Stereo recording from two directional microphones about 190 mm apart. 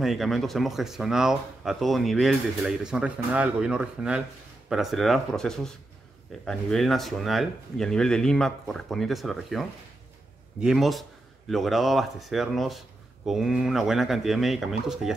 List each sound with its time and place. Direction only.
0.0 s speech: centre (ahead or behind)